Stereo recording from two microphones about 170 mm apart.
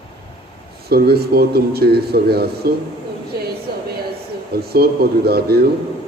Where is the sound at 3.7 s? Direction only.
65° right (ahead or behind).